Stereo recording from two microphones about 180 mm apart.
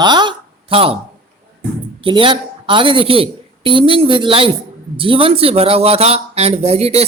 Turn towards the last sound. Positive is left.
turn(degrees=-35)  # may be behind; listen again after turning